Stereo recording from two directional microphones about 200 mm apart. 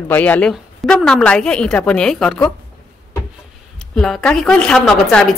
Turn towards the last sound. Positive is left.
turn(degrees=5)  # may be behind; listen again after turning